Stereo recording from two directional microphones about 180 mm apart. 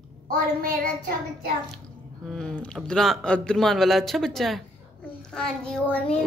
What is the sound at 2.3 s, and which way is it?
A woman's voice, 5° left (ahead or behind).